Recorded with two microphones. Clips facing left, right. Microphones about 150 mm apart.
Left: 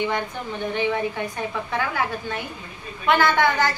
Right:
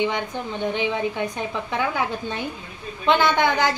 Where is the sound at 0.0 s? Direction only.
20° right (ahead or behind).